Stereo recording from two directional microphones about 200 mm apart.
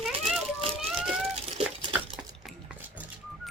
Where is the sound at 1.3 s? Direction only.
30° right (ahead or behind).